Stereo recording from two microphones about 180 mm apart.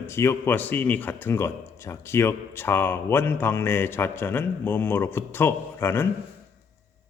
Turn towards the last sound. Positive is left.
turn(degrees=15)  # may be behind; listen again after turning